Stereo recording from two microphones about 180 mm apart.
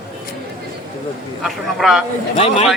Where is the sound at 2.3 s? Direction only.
35° left (ahead or behind).